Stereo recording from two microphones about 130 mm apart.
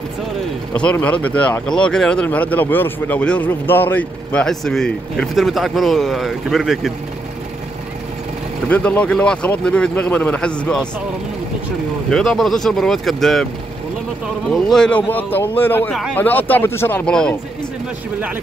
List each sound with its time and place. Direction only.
0.7 s speech: 10° left (ahead or behind)
8.6 s speech: 10° left (ahead or behind)
12.1 s speech: 5° left (ahead or behind)
14.5 s speech: 5° left (ahead or behind)
15.1 s speech: 15° left (ahead or behind)
15.9 s speech: centre (ahead or behind)
16.2 s speech: 15° left (ahead or behind)